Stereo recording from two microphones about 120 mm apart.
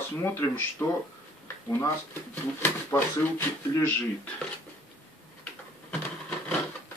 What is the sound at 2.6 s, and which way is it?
Speech, 20° left (ahead or behind).